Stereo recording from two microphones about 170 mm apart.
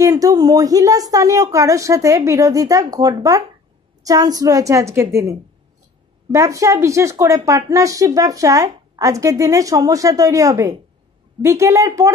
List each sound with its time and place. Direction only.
0.0 s speech: 20° right (ahead or behind)
6.3 s speech: 20° right (ahead or behind)